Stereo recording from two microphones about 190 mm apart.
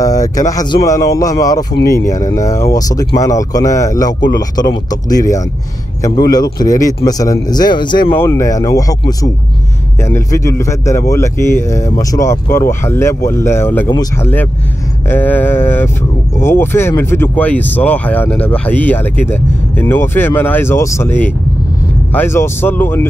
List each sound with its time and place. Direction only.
0.0 s a sound: 20° left (ahead or behind)
0.5 s a man's voice: 20° left (ahead or behind)
8.1 s a man's voice: 10° left (ahead or behind)